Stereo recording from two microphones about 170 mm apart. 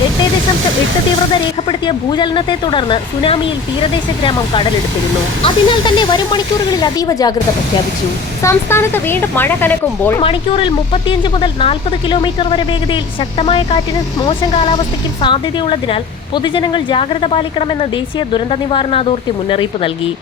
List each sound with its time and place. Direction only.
1.3 s speech: 30° left (ahead or behind)
8.4 s speech: 15° left (ahead or behind)
10.2 s a woman's voice: 30° left (ahead or behind)